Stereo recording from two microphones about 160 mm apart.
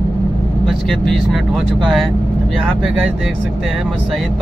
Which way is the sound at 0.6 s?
Centre (ahead or behind).